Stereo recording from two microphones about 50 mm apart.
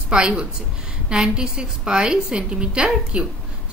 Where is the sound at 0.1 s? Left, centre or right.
Centre.